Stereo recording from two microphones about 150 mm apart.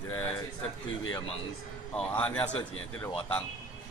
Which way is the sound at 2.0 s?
10° left (ahead or behind).